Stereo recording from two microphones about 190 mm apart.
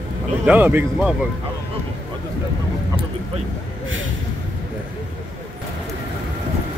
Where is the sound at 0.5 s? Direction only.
10° right (ahead or behind).